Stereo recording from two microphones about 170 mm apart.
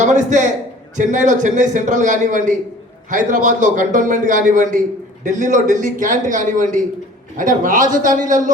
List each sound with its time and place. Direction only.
0.0 s a man's voice: 45° right (ahead or behind)